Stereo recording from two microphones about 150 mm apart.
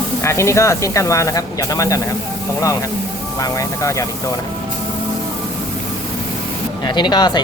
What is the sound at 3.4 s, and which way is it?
Speech, 20° left (ahead or behind).